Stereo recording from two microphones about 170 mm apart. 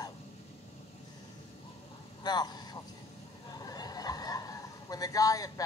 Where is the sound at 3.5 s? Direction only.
20° left (ahead or behind).